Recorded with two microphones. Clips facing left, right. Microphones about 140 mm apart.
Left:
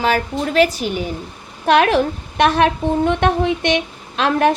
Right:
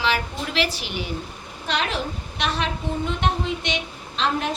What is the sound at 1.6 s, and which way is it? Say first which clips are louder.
A woman's voice: left 12 dB; 60° left (ahead or behind).